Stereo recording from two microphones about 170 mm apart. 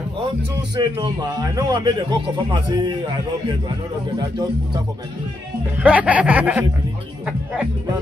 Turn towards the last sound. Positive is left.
turn(degrees=-10)  # may be behind; listen again after turning